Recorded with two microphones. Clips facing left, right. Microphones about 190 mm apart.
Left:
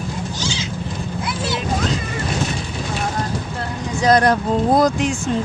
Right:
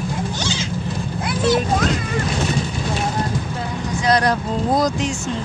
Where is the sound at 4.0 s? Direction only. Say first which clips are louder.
Left 4 dB; 50° left (ahead or behind).